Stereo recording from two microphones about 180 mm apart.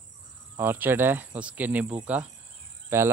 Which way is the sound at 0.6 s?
10° right (ahead or behind).